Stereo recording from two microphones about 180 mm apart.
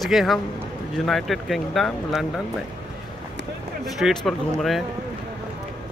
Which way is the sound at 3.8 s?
Centre (ahead or behind).